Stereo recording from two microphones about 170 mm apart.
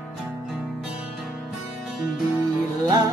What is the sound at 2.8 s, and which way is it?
Music, 25° right (ahead or behind).